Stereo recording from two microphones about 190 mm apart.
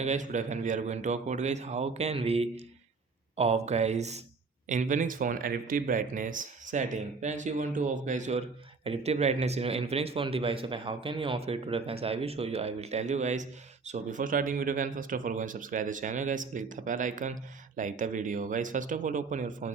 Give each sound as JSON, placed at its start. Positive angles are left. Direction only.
{"t": 0.0, "sound": "speech", "side_deg": -40}